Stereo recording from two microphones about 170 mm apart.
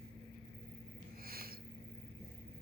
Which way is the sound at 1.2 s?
60° right (ahead or behind).